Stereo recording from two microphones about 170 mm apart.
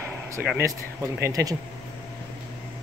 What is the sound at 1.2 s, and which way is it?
Speech, 20° right (ahead or behind).